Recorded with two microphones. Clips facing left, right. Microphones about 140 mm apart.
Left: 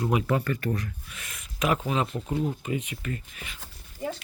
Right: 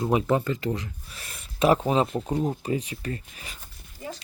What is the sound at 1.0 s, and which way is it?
Speech, 35° right (ahead or behind).